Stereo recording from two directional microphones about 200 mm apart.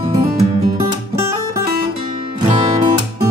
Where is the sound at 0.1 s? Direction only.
25° right (ahead or behind).